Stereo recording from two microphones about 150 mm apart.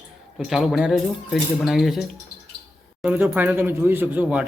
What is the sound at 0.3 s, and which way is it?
Speech, centre (ahead or behind).